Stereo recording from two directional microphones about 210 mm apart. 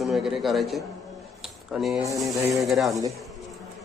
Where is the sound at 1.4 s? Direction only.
Centre (ahead or behind).